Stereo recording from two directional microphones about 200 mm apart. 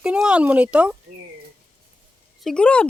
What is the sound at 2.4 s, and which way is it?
Speech, 5° left (ahead or behind).